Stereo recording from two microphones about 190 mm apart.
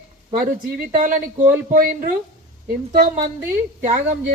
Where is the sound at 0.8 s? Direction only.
45° right (ahead or behind).